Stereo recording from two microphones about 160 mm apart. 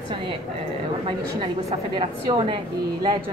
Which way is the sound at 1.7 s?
30° right (ahead or behind).